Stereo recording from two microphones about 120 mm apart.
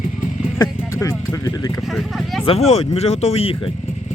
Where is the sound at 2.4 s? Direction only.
55° left (ahead or behind).